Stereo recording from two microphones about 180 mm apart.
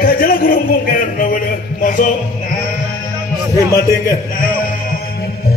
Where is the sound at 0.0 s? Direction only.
55° left (ahead or behind).